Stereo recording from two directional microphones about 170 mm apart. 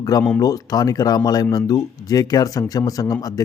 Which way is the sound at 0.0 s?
20° left (ahead or behind).